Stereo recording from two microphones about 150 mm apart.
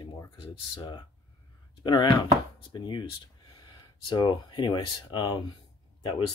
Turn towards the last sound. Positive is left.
turn(degrees=35)  # may be behind; listen again after turning